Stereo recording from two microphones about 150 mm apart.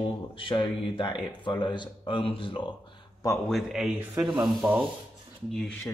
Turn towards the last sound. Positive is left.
turn(degrees=0)  # may be behind; listen again after turning